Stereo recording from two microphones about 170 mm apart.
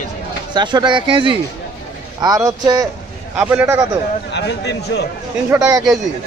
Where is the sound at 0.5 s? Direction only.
25° right (ahead or behind).